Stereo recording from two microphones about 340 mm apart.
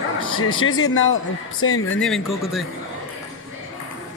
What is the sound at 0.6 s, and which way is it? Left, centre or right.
Speech, left.